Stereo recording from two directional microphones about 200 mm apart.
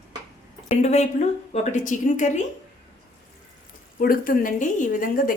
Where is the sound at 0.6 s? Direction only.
35° left (ahead or behind).